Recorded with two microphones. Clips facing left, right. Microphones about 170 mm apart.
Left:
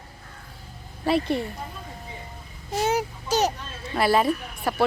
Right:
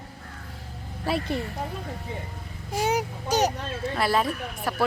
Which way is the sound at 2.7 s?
15° right (ahead or behind).